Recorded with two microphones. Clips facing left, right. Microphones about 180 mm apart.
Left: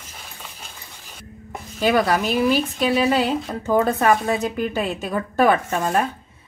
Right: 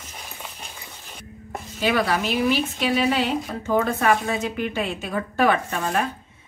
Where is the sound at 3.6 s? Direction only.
35° left (ahead or behind).